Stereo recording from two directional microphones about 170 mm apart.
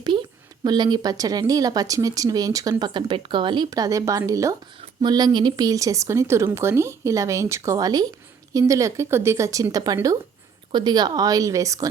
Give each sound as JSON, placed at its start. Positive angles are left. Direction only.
{"t": 0.6, "sound": "speech", "side_deg": -25}